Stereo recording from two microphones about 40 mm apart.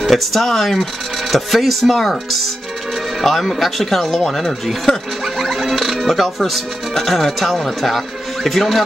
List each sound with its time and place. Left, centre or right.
0.0 s speech: centre
3.2 s speech: centre
4.9 s speech: left
5.2 s speech: centre